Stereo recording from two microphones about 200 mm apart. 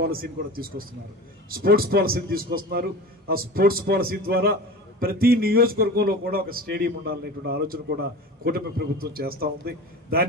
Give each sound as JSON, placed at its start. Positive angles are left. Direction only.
{"t": 0.0, "sound": "a man's voice", "side_deg": -50}